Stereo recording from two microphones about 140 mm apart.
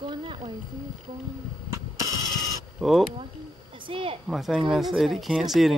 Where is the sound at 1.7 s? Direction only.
25° right (ahead or behind).